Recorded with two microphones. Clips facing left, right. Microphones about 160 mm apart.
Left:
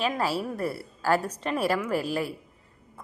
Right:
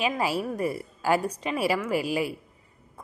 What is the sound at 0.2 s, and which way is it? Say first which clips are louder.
A woman's voice: right 1 dB; 10° right (ahead or behind).